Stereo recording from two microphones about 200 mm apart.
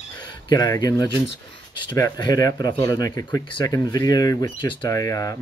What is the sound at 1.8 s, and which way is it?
Speech, 20° left (ahead or behind).